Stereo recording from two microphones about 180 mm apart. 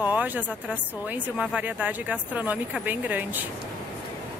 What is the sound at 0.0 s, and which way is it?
Speech, 10° right (ahead or behind).